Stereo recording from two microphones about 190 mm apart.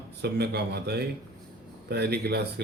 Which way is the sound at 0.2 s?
60° right (ahead or behind).